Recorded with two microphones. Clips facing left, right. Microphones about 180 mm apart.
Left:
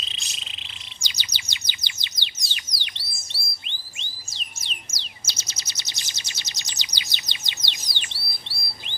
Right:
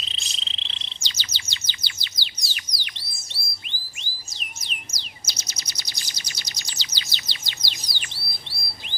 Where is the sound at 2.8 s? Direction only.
25° left (ahead or behind).